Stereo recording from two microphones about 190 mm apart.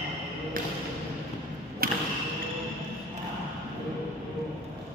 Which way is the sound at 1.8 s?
50° right (ahead or behind).